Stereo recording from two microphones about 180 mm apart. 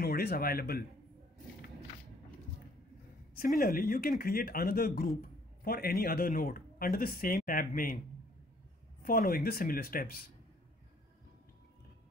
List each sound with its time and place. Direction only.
0.0 s speech: 55° left (ahead or behind)
3.3 s speech: 55° left (ahead or behind)
9.0 s speech: 55° left (ahead or behind)